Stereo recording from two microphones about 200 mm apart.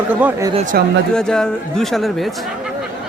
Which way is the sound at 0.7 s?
50° right (ahead or behind).